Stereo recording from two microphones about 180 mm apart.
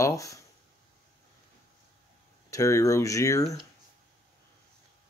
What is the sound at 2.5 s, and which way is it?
Speech, 15° left (ahead or behind).